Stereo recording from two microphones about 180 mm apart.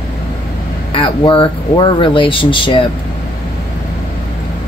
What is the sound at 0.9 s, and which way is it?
Speech, 30° left (ahead or behind).